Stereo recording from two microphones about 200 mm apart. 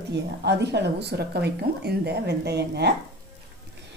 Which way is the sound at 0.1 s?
60° right (ahead or behind).